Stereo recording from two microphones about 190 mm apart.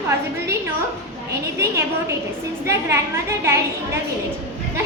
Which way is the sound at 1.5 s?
15° right (ahead or behind).